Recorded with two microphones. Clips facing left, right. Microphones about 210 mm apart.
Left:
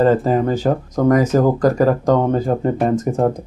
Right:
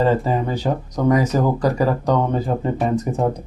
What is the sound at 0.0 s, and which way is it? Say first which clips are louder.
Speech: left 4 dB; 50° left (ahead or behind).